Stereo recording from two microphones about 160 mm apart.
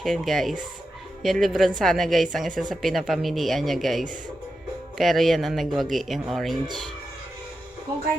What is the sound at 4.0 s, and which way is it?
Speech, 55° right (ahead or behind).